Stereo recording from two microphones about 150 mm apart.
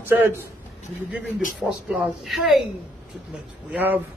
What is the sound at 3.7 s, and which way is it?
Speech, 10° right (ahead or behind).